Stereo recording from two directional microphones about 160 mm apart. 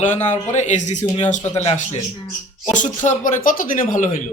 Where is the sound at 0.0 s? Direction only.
50° left (ahead or behind).